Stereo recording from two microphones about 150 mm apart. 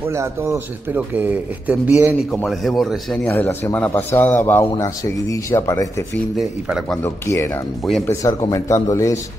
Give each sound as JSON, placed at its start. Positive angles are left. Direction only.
{"t": 0.0, "sound": "speech", "side_deg": -20}
{"t": 2.3, "sound": "speech", "side_deg": 0}
{"t": 3.3, "sound": "a man's voice", "side_deg": 15}
{"t": 6.3, "sound": "speech", "side_deg": 0}
{"t": 7.0, "sound": "a man's voice", "side_deg": 20}